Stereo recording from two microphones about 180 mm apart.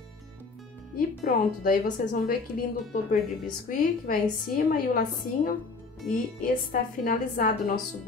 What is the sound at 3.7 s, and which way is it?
Speech, 50° left (ahead or behind).